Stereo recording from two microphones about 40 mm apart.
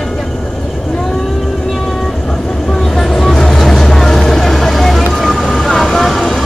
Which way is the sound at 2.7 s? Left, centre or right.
Centre.